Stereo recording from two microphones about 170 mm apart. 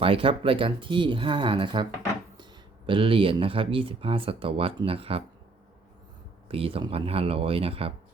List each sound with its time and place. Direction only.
0.0 s speech: 35° right (ahead or behind)
6.5 s speech: 35° right (ahead or behind)